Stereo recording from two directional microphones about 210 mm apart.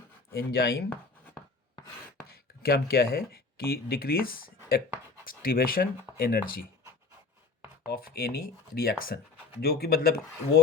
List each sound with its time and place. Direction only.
0.3 s speech: 50° left (ahead or behind)
2.2 s speech: 45° left (ahead or behind)
7.9 s speech: 45° left (ahead or behind)